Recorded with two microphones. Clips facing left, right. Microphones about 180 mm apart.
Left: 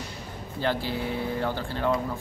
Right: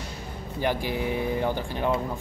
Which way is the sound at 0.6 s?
15° right (ahead or behind).